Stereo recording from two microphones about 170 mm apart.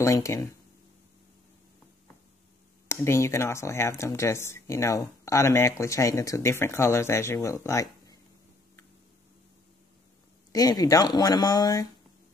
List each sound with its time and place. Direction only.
0.0 s speech: 20° left (ahead or behind)
2.9 s speech: 15° left (ahead or behind)
10.5 s speech: 20° left (ahead or behind)